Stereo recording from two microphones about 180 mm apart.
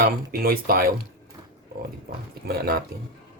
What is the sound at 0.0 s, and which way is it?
Speech, 55° right (ahead or behind).